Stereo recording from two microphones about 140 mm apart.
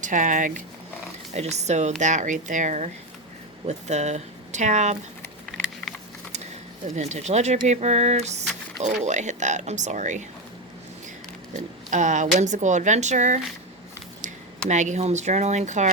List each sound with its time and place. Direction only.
0.0 s speech: 70° right (ahead or behind)
1.3 s speech: 50° right (ahead or behind)
5.9 s a sound: centre (ahead or behind)
6.3 s speech: 55° right (ahead or behind)
11.9 s speech: 60° right (ahead or behind)
14.7 s speech: 60° right (ahead or behind)